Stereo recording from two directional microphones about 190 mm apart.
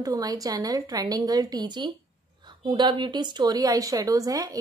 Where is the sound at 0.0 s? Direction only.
20° right (ahead or behind).